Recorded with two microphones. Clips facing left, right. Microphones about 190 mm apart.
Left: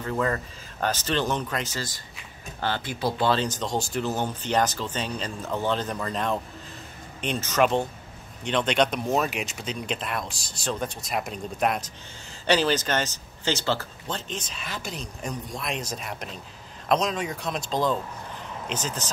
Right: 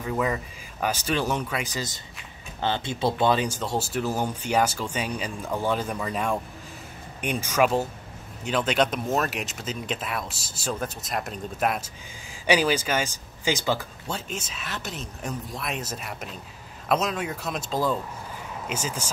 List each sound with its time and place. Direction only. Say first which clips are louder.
0.0 s speech: even; 10° right (ahead or behind)